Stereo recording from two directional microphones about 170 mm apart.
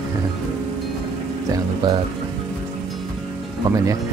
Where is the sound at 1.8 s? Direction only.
25° right (ahead or behind).